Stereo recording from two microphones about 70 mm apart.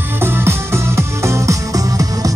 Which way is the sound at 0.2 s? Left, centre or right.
Right.